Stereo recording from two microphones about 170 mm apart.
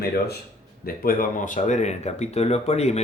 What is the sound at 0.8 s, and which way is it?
Speech, 60° left (ahead or behind).